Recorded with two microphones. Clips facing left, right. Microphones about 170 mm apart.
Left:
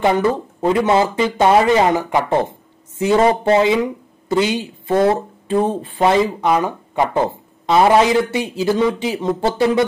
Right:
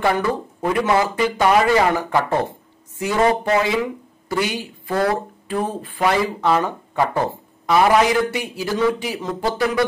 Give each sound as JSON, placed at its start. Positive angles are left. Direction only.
{"t": 0.0, "sound": "speech", "side_deg": 25}